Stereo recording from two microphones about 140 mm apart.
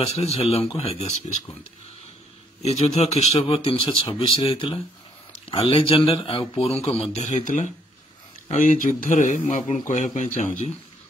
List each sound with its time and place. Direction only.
0.0 s speech: 50° left (ahead or behind)
2.6 s a man's voice: 50° left (ahead or behind)